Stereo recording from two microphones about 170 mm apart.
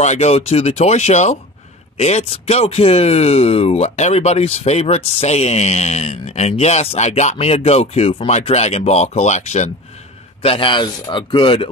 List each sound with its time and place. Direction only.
0.0 s speech: 40° left (ahead or behind)
10.4 s speech: 35° left (ahead or behind)